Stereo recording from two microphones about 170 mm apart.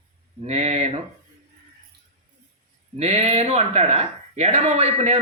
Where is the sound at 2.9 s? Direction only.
40° right (ahead or behind).